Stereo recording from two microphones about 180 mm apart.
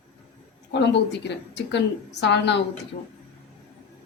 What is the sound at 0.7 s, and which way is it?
A woman's voice, 75° left (ahead or behind).